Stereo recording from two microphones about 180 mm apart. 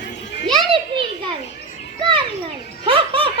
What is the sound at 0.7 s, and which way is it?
Children playing, 30° right (ahead or behind).